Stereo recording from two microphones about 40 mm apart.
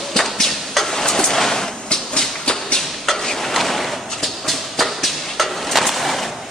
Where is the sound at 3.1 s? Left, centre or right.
Centre.